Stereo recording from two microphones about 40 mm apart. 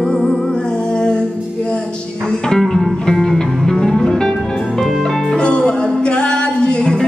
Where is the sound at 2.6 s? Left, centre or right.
Centre.